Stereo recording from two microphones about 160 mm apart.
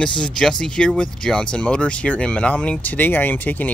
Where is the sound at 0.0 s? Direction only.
5° left (ahead or behind).